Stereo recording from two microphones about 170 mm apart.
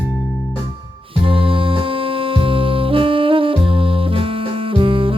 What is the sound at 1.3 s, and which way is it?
Music, 30° right (ahead or behind).